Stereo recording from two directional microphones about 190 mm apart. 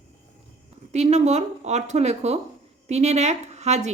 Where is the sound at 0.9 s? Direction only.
35° right (ahead or behind).